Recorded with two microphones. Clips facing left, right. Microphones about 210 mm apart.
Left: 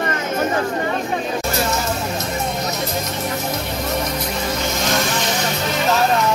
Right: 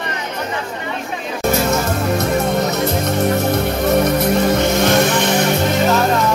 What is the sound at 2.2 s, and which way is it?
Music, 60° right (ahead or behind).